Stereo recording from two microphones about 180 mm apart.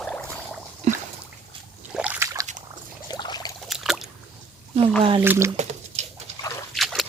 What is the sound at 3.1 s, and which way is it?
Pour, 20° left (ahead or behind).